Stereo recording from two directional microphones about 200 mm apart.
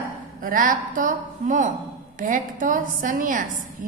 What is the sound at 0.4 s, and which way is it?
A woman's voice, 45° right (ahead or behind).